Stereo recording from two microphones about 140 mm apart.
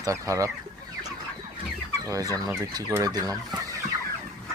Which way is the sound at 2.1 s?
25° right (ahead or behind).